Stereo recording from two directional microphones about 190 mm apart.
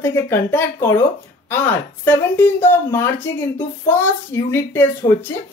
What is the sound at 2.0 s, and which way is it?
A woman's voice, 10° left (ahead or behind).